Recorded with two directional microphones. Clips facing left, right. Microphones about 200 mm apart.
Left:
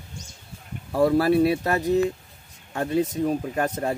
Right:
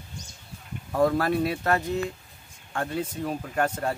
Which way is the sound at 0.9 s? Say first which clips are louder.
Left 4 dB; 10° left (ahead or behind).